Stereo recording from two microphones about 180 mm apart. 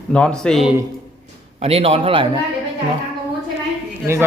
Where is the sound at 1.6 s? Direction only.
35° right (ahead or behind).